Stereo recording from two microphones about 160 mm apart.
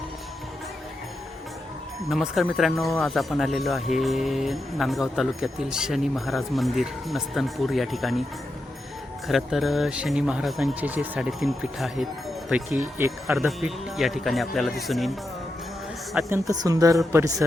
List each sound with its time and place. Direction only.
2.0 s speech: centre (ahead or behind)
9.2 s speech: centre (ahead or behind)
16.3 s speech: 20° right (ahead or behind)